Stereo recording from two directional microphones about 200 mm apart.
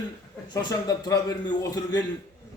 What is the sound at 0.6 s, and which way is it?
Speech, 20° left (ahead or behind).